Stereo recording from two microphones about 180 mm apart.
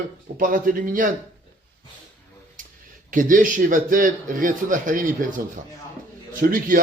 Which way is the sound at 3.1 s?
50° right (ahead or behind).